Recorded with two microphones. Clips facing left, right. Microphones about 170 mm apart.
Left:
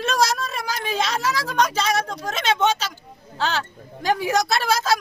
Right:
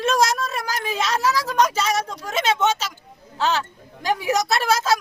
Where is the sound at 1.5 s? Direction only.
5° right (ahead or behind).